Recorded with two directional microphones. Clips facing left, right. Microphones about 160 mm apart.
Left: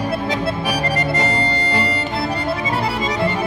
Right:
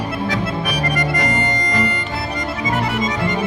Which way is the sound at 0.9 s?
30° left (ahead or behind).